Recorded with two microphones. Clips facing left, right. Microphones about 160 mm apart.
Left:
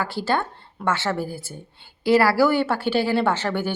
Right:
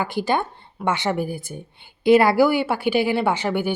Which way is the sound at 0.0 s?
15° right (ahead or behind).